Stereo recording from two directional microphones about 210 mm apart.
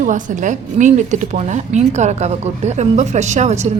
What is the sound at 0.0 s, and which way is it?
A woman's voice, 35° right (ahead or behind).